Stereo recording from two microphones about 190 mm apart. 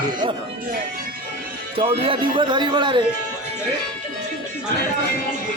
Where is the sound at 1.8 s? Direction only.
30° right (ahead or behind).